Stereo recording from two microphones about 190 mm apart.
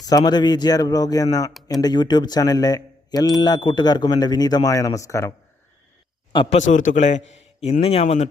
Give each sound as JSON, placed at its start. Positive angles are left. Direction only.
{"t": 0.0, "sound": "speech", "side_deg": 20}
{"t": 6.3, "sound": "speech", "side_deg": 25}
{"t": 6.6, "sound": "speech", "side_deg": 40}